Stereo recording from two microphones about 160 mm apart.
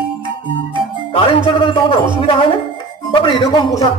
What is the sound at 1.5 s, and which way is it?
Speech, 35° left (ahead or behind).